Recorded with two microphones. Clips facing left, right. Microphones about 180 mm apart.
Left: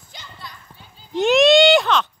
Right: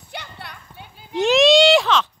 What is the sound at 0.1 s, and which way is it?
Clip-clop, 65° right (ahead or behind).